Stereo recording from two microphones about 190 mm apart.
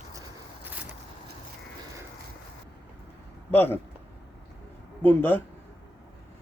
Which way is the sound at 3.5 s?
10° left (ahead or behind).